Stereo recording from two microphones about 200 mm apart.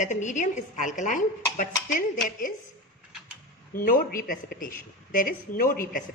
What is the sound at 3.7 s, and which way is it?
A woman's voice, 45° left (ahead or behind).